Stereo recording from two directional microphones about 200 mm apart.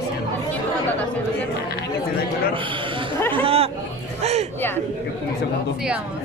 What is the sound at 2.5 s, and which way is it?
A man's voice, 25° right (ahead or behind).